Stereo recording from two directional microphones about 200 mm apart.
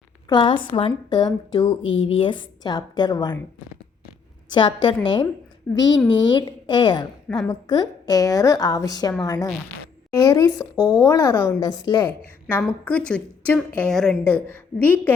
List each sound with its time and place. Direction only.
0.3 s a woman's voice: 25° left (ahead or behind)
1.8 s speech: 75° left (ahead or behind)
2.1 s a woman's voice: 25° left (ahead or behind)
4.4 s a woman's voice: 20° left (ahead or behind)